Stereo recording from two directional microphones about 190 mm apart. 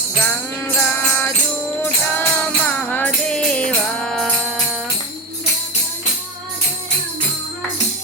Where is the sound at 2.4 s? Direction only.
10° left (ahead or behind).